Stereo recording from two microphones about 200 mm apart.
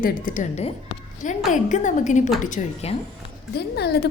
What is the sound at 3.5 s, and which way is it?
Speech, 55° left (ahead or behind).